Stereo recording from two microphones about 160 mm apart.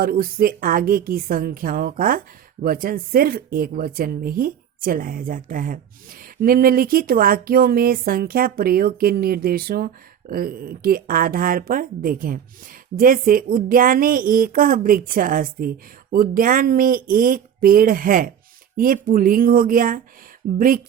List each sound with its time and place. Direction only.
0.0 s a woman's voice: 70° right (ahead or behind)